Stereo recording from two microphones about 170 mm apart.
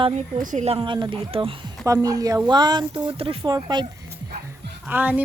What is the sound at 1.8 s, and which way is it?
Speech, 20° right (ahead or behind).